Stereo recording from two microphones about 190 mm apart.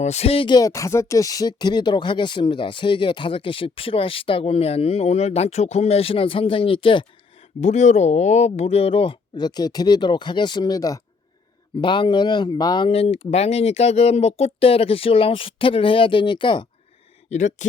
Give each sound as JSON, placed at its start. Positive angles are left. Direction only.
{"t": 0.0, "sound": "speech", "side_deg": 35}
{"t": 7.6, "sound": "speech", "side_deg": 40}
{"t": 17.2, "sound": "speech", "side_deg": 40}